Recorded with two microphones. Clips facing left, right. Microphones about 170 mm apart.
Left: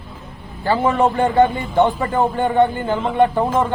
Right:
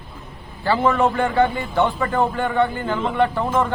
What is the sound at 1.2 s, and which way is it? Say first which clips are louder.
A man's voice: left 3 dB; 20° left (ahead or behind).